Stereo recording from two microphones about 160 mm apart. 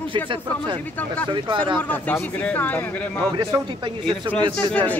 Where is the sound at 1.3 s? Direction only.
30° right (ahead or behind).